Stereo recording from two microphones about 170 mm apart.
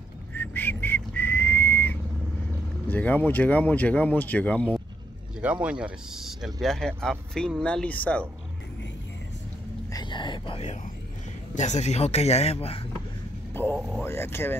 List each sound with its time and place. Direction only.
0.3 s whistling: 10° left (ahead or behind)
2.9 s speech: 10° left (ahead or behind)
5.4 s speech: 5° right (ahead or behind); by 8.3 s 10° left (ahead or behind)
9.9 s speech: 25° left (ahead or behind)
11.5 s speech: 45° left (ahead or behind)
13.7 s speech: centre (ahead or behind)
14.0 s speech: 15° left (ahead or behind)